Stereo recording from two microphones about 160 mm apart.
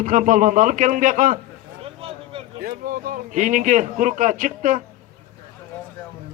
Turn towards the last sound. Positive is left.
turn(degrees=-55)  # may be behind; listen again after turning